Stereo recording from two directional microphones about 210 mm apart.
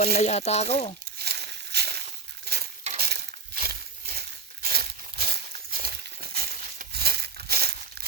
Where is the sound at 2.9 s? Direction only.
45° right (ahead or behind).